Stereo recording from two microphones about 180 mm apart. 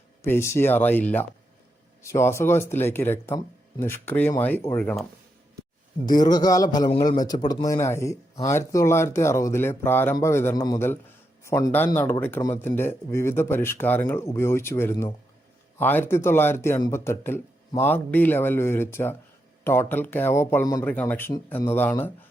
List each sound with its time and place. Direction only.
0.2 s speech: 15° left (ahead or behind)
6.1 s a man's voice: 20° left (ahead or behind)